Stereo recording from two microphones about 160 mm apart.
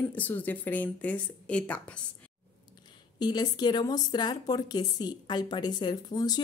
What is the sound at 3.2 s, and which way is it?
A woman's voice, 25° left (ahead or behind).